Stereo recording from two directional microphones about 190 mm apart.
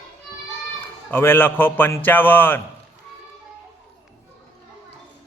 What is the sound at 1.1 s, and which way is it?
A man's voice, 10° left (ahead or behind).